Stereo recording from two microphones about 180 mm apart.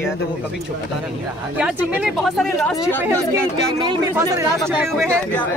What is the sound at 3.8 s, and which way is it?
Speech, 25° right (ahead or behind).